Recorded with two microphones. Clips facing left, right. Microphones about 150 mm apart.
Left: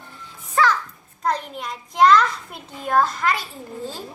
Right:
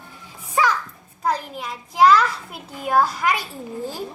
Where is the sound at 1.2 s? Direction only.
5° right (ahead or behind).